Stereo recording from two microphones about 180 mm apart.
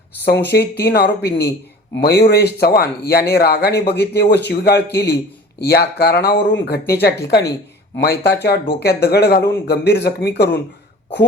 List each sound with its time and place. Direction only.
0.3 s speech: 65° left (ahead or behind)